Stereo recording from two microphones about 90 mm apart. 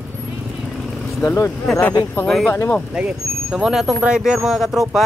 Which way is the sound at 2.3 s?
5° left (ahead or behind).